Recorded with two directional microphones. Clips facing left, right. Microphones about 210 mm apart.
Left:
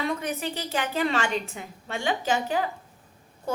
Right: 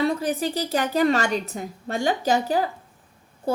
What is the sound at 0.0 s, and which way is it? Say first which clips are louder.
A woman's voice: right 6 dB; 35° right (ahead or behind).